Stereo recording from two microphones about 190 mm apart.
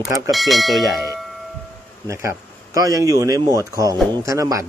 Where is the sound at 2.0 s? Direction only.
15° right (ahead or behind).